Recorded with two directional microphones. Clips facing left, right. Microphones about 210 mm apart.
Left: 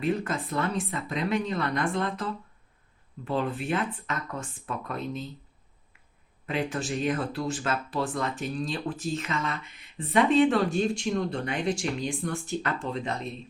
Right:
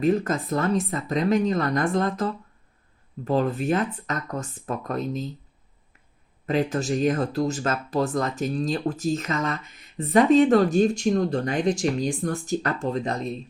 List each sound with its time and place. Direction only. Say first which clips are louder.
0.0 s speech: right 6 dB; 40° right (ahead or behind)
6.4 s speech: right 6 dB; 40° right (ahead or behind)